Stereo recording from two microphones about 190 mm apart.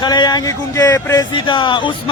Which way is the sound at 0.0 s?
20° left (ahead or behind).